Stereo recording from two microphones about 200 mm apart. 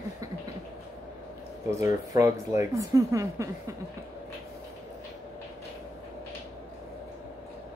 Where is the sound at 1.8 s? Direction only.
15° right (ahead or behind).